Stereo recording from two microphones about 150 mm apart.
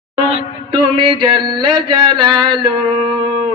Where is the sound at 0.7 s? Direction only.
30° right (ahead or behind).